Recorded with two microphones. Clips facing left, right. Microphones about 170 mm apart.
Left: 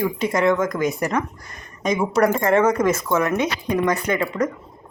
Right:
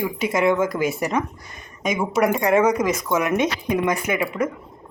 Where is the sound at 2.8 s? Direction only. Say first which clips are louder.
Left 2 dB; 15° right (ahead or behind).